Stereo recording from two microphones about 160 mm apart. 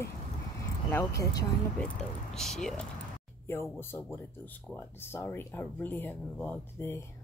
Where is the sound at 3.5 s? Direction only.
15° left (ahead or behind).